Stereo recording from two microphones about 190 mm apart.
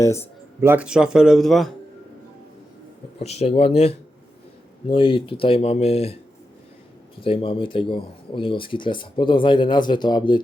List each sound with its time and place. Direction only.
0.0 s speech: 15° left (ahead or behind)
0.6 s speech: 10° right (ahead or behind)
3.2 s speech: 35° left (ahead or behind)
4.9 s speech: 25° left (ahead or behind)
7.2 s speech: 30° left (ahead or behind)